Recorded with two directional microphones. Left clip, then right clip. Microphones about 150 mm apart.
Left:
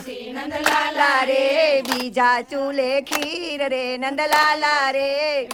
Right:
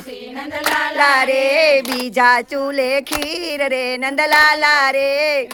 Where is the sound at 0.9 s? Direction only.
40° right (ahead or behind).